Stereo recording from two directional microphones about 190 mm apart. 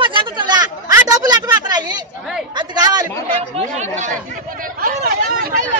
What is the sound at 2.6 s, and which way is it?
Chatter, 20° right (ahead or behind).